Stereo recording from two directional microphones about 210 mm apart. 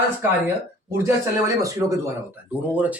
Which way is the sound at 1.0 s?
15° right (ahead or behind).